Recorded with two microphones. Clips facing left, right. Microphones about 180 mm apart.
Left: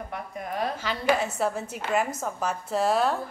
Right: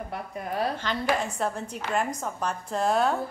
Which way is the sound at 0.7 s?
5° left (ahead or behind).